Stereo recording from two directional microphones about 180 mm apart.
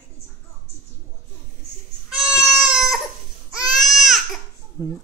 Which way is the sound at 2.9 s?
5° right (ahead or behind).